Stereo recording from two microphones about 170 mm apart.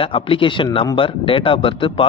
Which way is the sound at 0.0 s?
30° left (ahead or behind).